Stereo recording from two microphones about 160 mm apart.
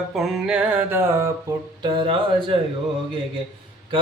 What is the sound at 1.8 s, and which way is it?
Music, 30° right (ahead or behind).